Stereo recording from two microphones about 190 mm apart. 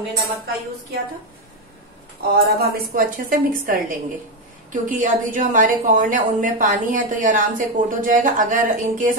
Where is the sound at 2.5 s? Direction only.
50° right (ahead or behind).